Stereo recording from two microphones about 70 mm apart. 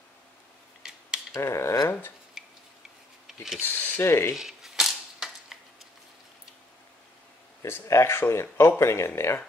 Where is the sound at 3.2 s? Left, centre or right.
Centre.